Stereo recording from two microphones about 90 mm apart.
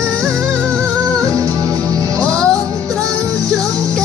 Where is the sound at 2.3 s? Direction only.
10° left (ahead or behind).